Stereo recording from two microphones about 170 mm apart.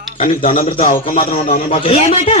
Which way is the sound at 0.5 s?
50° left (ahead or behind).